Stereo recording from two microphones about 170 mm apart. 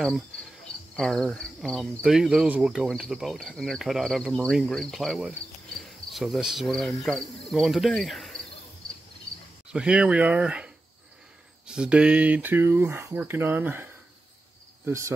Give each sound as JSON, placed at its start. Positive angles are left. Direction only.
{"t": 0.9, "sound": "speech", "side_deg": 0}
{"t": 5.9, "sound": "cricket", "side_deg": 0}
{"t": 9.7, "sound": "speech", "side_deg": -5}
{"t": 14.9, "sound": "speech", "side_deg": -15}